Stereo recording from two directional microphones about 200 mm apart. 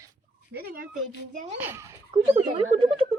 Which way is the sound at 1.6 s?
10° right (ahead or behind).